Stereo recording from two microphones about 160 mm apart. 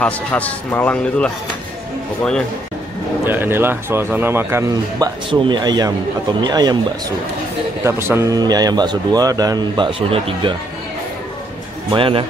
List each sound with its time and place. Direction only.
0.0 s a man's voice: 10° left (ahead or behind)
3.3 s a man's voice: 15° right (ahead or behind)
7.8 s a man's voice: 15° right (ahead or behind); by 10.5 s 35° right (ahead or behind)
11.9 s speech: 35° right (ahead or behind)